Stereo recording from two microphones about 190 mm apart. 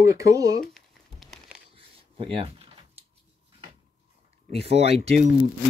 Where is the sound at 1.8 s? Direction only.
30° right (ahead or behind).